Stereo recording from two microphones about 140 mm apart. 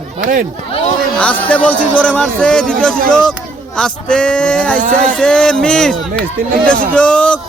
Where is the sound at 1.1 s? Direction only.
10° left (ahead or behind).